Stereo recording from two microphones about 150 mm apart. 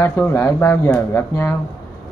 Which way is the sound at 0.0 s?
15° left (ahead or behind).